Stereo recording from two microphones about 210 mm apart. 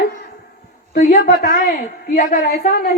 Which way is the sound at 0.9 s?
40° left (ahead or behind).